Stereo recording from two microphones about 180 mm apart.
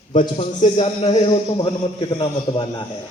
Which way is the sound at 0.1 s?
35° left (ahead or behind).